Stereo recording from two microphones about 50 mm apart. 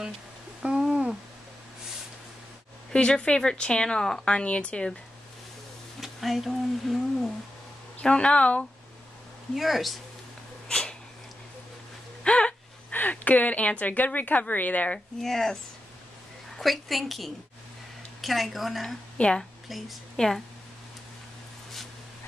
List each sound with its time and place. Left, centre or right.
0.6 s a sound: centre
2.9 s speech: centre
5.9 s speech: centre
8.0 s speech: left
9.6 s a woman's voice: centre
10.7 s a sound: centre
12.2 s gasp: centre
12.9 s speech: left
15.2 s a woman's voice: centre
19.1 s a woman's voice: left
19.7 s a woman's voice: centre